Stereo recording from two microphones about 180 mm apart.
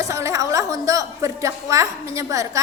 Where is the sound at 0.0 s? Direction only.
15° right (ahead or behind).